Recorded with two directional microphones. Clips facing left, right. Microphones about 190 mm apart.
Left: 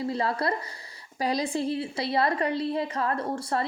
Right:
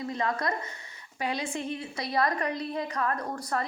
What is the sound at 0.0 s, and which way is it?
A woman's voice, 30° left (ahead or behind).